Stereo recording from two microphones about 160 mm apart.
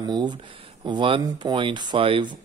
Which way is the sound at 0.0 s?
25° right (ahead or behind).